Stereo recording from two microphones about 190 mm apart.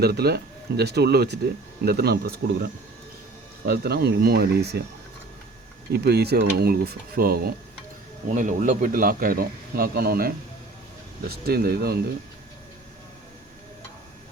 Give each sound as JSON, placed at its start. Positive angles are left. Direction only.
{"t": 0.0, "sound": "speech", "side_deg": -55}
{"t": 3.7, "sound": "speech", "side_deg": -55}
{"t": 5.9, "sound": "a man's voice", "side_deg": -60}